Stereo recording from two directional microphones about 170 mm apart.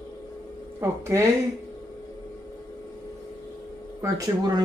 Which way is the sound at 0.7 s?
15° right (ahead or behind).